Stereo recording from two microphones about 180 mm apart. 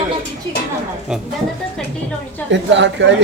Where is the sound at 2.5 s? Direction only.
85° right.